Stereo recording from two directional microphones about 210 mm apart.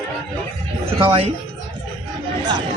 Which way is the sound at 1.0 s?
25° right (ahead or behind).